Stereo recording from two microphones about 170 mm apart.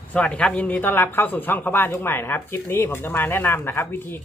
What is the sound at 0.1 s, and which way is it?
A man's voice, 5° left (ahead or behind).